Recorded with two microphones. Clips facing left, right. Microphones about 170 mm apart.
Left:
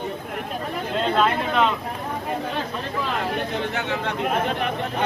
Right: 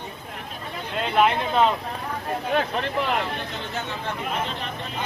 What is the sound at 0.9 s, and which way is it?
Chatter, 15° right (ahead or behind).